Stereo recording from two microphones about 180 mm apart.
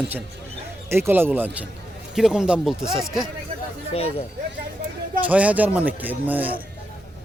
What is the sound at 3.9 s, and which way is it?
Speech, 35° left (ahead or behind).